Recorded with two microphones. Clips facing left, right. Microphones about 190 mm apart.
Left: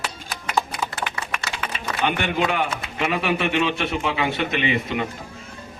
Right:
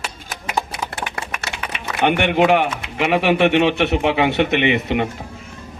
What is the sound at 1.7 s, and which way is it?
Speech, 65° right (ahead or behind).